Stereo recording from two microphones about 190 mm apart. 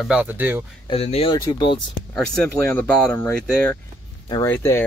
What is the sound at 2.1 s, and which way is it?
Speech, 5° left (ahead or behind).